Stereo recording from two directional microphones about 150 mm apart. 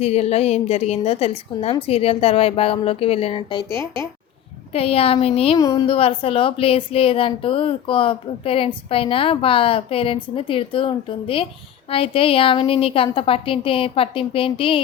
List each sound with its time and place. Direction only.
0.0 s a woman's voice: 45° left (ahead or behind)
3.7 s speech: 20° left (ahead or behind)
4.7 s speech: 40° left (ahead or behind)
5.5 s speech: 25° left (ahead or behind)
5.9 s speech: 35° left (ahead or behind)